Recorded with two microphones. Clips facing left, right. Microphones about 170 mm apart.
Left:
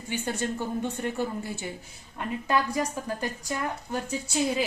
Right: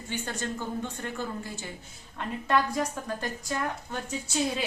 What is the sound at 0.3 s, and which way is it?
Speech, 15° left (ahead or behind).